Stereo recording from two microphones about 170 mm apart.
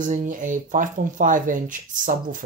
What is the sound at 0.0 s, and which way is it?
Speech, 50° right (ahead or behind).